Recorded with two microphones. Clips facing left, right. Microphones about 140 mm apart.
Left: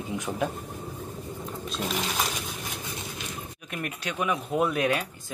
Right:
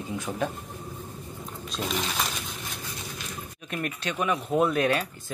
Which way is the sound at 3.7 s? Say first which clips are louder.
Right 2 dB; 10° left (ahead or behind).